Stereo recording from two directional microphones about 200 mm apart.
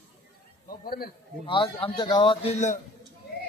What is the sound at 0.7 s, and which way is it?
Speech, 45° left (ahead or behind).